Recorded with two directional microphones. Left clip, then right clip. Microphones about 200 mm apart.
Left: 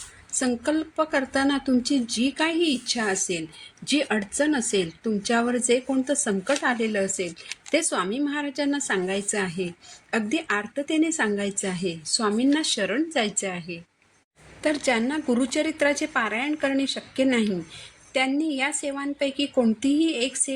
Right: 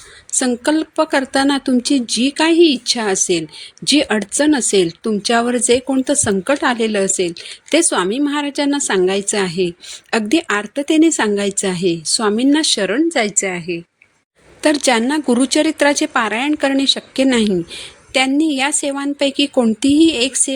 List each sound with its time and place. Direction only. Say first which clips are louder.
0.3 s a woman's voice: right 8 dB; 45° right (ahead or behind)